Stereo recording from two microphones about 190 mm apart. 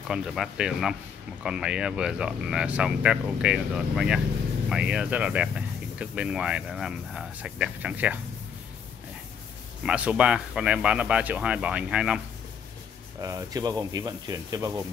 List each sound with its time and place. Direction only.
0.1 s speech: centre (ahead or behind)
9.8 s speech: 5° right (ahead or behind)
13.2 s speech: 20° right (ahead or behind)